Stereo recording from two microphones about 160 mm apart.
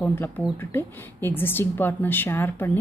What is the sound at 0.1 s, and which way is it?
Speech, 15° left (ahead or behind).